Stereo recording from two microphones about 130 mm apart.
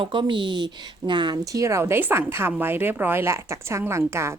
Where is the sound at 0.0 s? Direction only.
40° right (ahead or behind).